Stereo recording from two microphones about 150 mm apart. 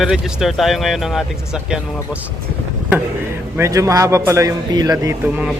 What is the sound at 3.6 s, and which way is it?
A man's voice, 20° right (ahead or behind).